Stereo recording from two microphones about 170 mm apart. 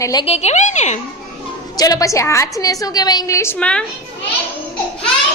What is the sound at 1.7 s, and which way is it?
A woman's voice, 20° left (ahead or behind).